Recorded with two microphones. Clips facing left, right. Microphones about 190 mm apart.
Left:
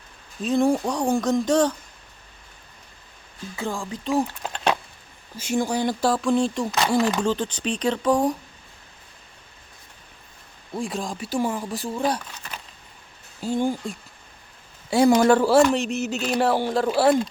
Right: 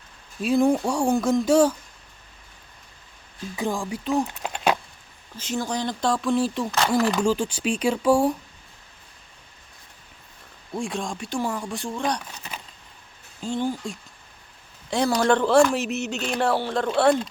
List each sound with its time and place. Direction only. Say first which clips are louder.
0.4 s speech: right 1 dB; 5° right (ahead or behind)
3.5 s speech: right 2 dB; 15° right (ahead or behind)
4.4 s a sound: right 1 dB; 10° right (ahead or behind)
5.4 s speech: left 4 dB; 10° left (ahead or behind)
6.7 s speech: even; 10° left (ahead or behind)
7.2 s speech: right 1 dB; 10° right (ahead or behind)
10.8 s speech: even; centre (ahead or behind)
13.4 s speech: left 3 dB; 10° left (ahead or behind)